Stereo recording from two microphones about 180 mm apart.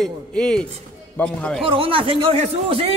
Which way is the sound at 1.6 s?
30° right (ahead or behind).